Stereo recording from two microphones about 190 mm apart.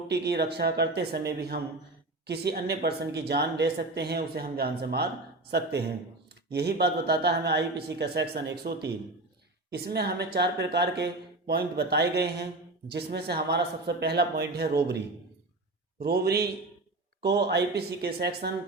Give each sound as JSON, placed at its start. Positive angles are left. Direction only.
{"t": 0.1, "sound": "speech", "side_deg": -60}